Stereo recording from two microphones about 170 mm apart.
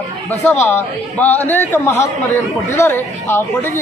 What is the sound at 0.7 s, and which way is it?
A man's voice, 10° left (ahead or behind).